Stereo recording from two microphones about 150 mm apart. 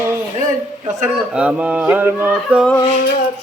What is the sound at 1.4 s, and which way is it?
Speech, 10° right (ahead or behind).